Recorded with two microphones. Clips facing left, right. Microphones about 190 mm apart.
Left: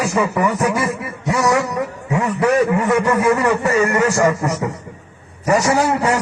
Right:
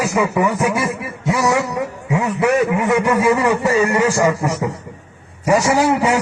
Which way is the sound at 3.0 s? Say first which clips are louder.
Even; 10° right (ahead or behind).